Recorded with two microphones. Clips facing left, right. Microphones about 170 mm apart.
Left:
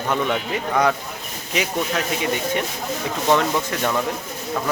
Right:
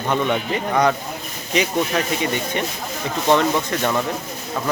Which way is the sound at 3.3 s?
5° left (ahead or behind).